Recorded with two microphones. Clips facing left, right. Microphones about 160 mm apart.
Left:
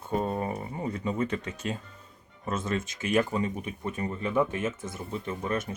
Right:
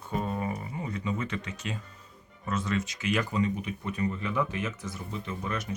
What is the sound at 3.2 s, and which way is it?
Speech, 25° left (ahead or behind).